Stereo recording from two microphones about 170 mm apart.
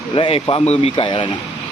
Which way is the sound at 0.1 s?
35° left (ahead or behind).